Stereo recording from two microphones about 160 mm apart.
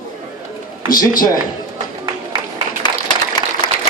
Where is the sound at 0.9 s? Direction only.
60° left (ahead or behind).